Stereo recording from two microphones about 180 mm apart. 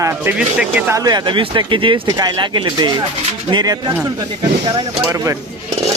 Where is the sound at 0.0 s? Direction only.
10° right (ahead or behind).